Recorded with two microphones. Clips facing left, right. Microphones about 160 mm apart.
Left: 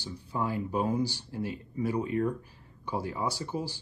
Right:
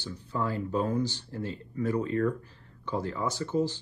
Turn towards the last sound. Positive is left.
turn(degrees=10)  # may be behind; listen again after turning